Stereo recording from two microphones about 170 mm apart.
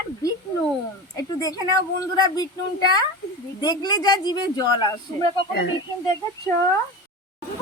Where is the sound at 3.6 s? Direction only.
25° left (ahead or behind).